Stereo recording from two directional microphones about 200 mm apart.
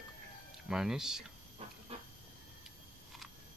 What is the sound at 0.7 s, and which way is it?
Speech, centre (ahead or behind).